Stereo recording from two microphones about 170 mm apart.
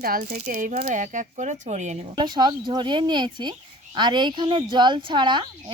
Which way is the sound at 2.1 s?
25° right (ahead or behind).